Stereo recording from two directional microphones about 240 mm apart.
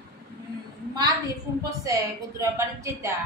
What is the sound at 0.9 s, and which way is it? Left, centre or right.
Speech, centre.